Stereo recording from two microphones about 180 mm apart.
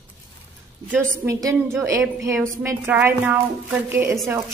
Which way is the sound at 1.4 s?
15° right (ahead or behind).